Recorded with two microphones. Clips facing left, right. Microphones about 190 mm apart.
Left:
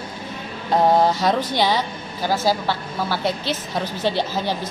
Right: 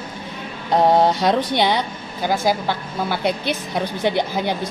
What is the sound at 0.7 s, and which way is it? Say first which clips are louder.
A woman's voice: right 1 dB; 20° right (ahead or behind).